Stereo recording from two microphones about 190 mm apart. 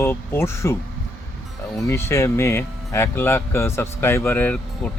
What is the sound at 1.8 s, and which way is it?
Speech, 15° left (ahead or behind).